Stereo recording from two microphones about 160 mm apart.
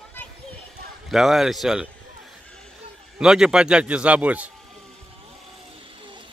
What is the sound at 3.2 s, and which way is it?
Speech, 5° right (ahead or behind).